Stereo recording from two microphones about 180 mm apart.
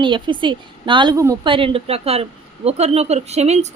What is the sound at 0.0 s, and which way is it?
A woman's voice, 25° right (ahead or behind).